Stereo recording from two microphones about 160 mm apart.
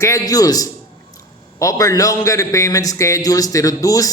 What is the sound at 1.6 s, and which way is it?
A man's voice, 20° left (ahead or behind).